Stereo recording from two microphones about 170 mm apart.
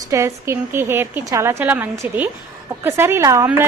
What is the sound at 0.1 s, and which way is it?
A woman's voice, 15° right (ahead or behind).